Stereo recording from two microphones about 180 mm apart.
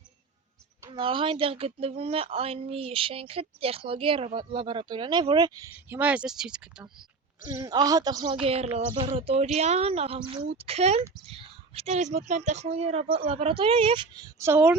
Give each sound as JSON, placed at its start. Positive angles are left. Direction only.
{"t": 0.9, "sound": "speech", "side_deg": -25}
{"t": 5.7, "sound": "speech", "side_deg": -10}
{"t": 7.4, "sound": "speech", "side_deg": -20}
{"t": 14.3, "sound": "speech", "side_deg": -15}